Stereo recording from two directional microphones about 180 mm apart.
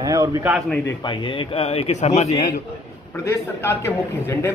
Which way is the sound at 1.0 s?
30° left (ahead or behind).